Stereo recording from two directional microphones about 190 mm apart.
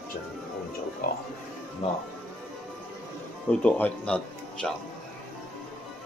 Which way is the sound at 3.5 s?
5° left (ahead or behind).